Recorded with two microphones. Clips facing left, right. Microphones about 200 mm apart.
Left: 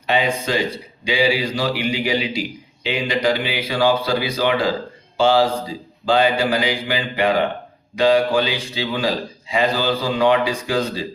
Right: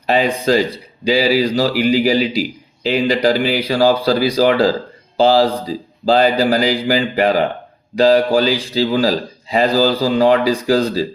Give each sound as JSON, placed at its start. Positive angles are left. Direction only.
{"t": 0.1, "sound": "speech", "side_deg": -40}